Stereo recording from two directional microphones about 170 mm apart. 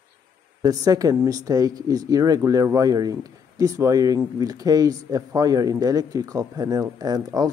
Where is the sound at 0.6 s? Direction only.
20° right (ahead or behind).